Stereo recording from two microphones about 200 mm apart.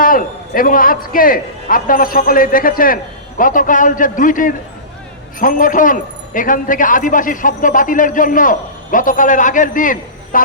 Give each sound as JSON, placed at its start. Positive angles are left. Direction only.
{"t": 0.0, "sound": "a man's voice", "side_deg": 45}